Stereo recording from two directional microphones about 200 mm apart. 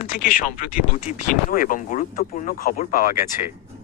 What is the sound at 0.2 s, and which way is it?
Speech, 45° left (ahead or behind).